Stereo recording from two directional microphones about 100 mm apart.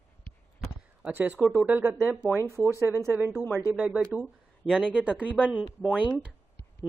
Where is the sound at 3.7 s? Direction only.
10° right (ahead or behind).